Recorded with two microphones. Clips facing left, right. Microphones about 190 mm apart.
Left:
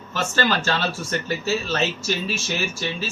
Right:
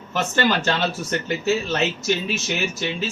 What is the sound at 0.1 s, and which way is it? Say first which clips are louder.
Speech: right 2 dB; 15° right (ahead or behind).